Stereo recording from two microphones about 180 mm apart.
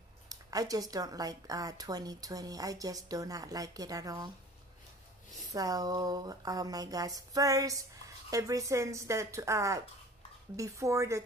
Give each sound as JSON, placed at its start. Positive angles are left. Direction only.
{"t": 0.3, "sound": "a woman's voice", "side_deg": -20}
{"t": 5.5, "sound": "a woman's voice", "side_deg": -20}